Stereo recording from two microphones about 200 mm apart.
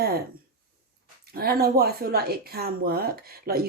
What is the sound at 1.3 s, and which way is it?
Speech, 50° right (ahead or behind).